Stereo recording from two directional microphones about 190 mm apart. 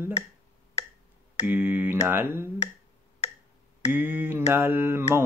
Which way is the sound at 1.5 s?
10° right (ahead or behind).